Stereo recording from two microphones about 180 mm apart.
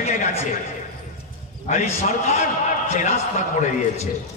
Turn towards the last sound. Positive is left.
turn(degrees=40)  # may be behind; listen again after turning